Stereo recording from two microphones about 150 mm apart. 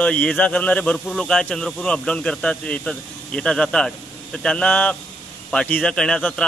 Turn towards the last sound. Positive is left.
turn(degrees=5)  # may be behind; listen again after turning